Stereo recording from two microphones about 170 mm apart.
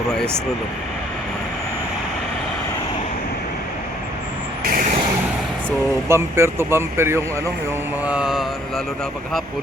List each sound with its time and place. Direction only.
4.7 s vehicle: 50° right (ahead or behind)
6.1 s speech: 15° right (ahead or behind)
8.0 s mantra: 5° right (ahead or behind)